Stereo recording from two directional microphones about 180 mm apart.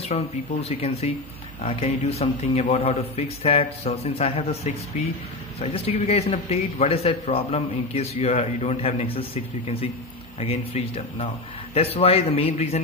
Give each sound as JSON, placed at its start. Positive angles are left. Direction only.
{"t": 0.0, "sound": "a man's voice", "side_deg": 35}